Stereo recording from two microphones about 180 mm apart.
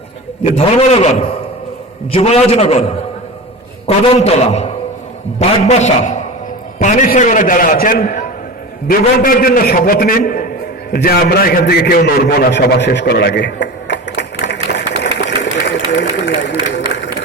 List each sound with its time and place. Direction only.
0.5 s a man's voice: 35° left (ahead or behind)
3.8 s a man's voice: 35° left (ahead or behind); by 16.6 s 70° left (ahead or behind)
16.9 s a sound: 70° left (ahead or behind)